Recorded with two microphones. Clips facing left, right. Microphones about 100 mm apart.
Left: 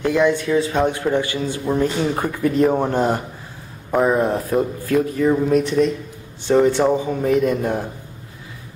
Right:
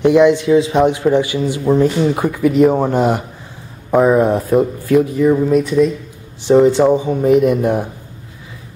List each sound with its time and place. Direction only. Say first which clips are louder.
0.0 s speech: right 7 dB; 15° right (ahead or behind)
5.2 s speech: right 4 dB; 5° right (ahead or behind)
6.4 s speech: right 5 dB; 15° right (ahead or behind)